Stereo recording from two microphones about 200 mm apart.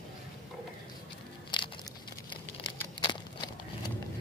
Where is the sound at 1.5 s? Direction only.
20° left (ahead or behind).